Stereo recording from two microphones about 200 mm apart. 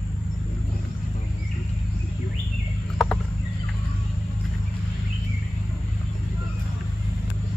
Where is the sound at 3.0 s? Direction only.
Centre (ahead or behind).